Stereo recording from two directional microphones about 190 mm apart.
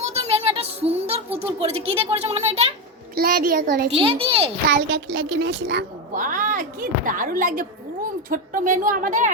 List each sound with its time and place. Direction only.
0.0 s a sound: 35° right (ahead or behind)
3.2 s speech: 50° right (ahead or behind)
3.9 s a child's voice: 30° right (ahead or behind)
4.7 s a child's voice: 75° right (ahead or behind)
6.1 s speech: 45° right (ahead or behind)